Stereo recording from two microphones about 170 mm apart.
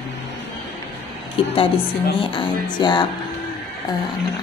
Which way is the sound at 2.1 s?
30° left (ahead or behind).